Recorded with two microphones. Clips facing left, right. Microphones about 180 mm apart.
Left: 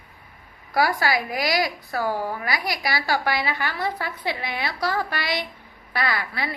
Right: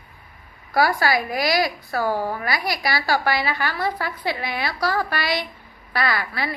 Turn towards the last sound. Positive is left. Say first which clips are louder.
# right 2 dB
turn(degrees=20)  # may be behind; listen again after turning